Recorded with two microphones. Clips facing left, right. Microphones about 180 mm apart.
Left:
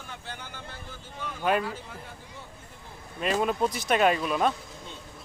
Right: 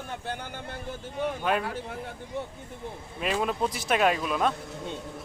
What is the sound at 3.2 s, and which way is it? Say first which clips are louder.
Speech: left 2 dB; centre (ahead or behind).